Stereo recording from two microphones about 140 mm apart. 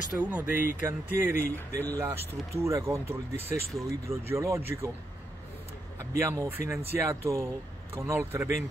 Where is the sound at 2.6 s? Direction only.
20° right (ahead or behind).